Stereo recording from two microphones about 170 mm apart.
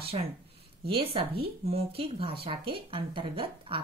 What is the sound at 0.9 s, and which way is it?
A woman's voice, 35° right (ahead or behind).